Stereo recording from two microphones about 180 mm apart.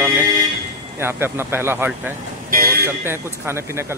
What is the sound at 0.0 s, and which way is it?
Vehicle, 15° right (ahead or behind).